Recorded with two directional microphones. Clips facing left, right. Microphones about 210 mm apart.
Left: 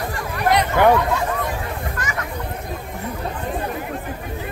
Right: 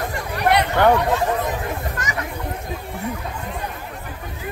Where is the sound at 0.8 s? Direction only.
10° left (ahead or behind).